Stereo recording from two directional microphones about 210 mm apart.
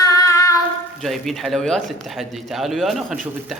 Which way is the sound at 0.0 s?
15° left (ahead or behind).